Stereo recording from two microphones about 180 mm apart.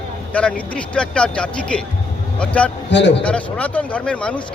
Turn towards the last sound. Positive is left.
turn(degrees=5)  # may be behind; listen again after turning